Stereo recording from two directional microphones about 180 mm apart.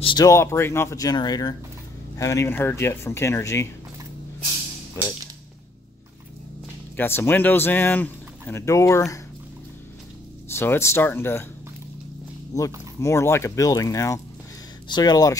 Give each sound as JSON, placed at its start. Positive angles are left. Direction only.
{"t": 0.0, "sound": "speech", "side_deg": 20}
{"t": 7.0, "sound": "speech", "side_deg": 10}
{"t": 10.5, "sound": "speech", "side_deg": 15}
{"t": 13.0, "sound": "speech", "side_deg": 15}